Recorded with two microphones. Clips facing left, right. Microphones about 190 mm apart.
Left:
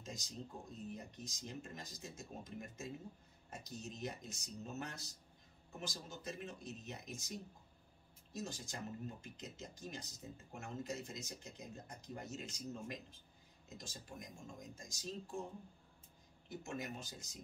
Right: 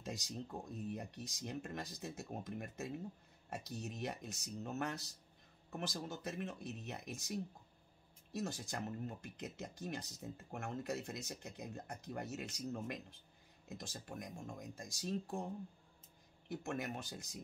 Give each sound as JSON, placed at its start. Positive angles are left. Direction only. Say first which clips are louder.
{"t": 0.0, "sound": "speech", "louder": "right 4 dB", "side_deg": -65}
{"t": 16.4, "sound": "speech", "louder": "right 3 dB", "side_deg": -60}